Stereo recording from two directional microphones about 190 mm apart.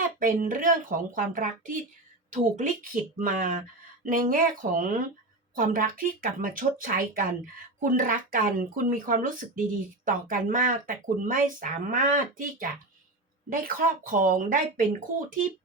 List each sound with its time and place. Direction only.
0.2 s speech: 45° right (ahead or behind)